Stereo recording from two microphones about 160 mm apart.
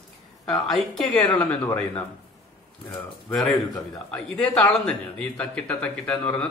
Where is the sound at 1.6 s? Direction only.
15° left (ahead or behind).